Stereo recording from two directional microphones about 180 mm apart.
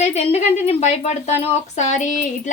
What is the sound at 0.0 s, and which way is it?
A woman's voice, 35° left (ahead or behind).